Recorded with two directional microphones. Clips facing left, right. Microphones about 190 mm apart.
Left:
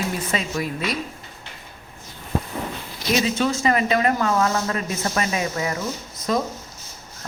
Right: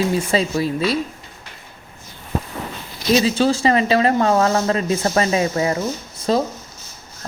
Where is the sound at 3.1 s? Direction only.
30° right (ahead or behind).